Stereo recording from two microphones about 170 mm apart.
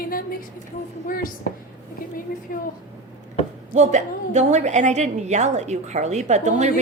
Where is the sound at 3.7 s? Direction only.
40° right (ahead or behind).